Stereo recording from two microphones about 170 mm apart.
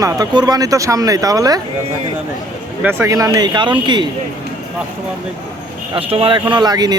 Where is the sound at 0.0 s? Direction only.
20° right (ahead or behind).